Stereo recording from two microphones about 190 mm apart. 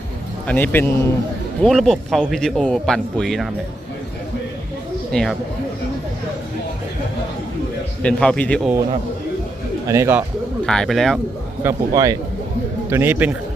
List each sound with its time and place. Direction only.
0.4 s speech: 10° left (ahead or behind)
5.1 s speech: centre (ahead or behind)
8.0 s speech: 5° left (ahead or behind)
9.8 s a man's voice: 15° right (ahead or behind)
10.7 s speech: centre (ahead or behind)
11.6 s a man's voice: 20° right (ahead or behind)